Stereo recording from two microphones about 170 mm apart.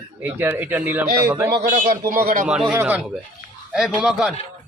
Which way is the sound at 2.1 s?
55° right (ahead or behind).